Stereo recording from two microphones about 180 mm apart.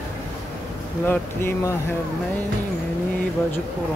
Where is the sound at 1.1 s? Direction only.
15° left (ahead or behind).